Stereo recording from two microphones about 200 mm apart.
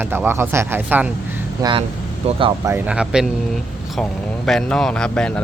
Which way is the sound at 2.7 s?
5° right (ahead or behind).